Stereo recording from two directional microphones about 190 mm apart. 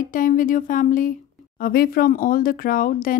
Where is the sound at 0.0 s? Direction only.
45° left (ahead or behind).